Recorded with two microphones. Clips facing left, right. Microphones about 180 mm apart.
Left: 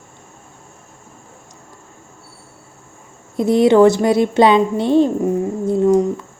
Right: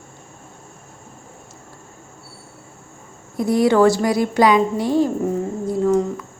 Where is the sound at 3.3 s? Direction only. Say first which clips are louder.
Left 4 dB; 25° left (ahead or behind).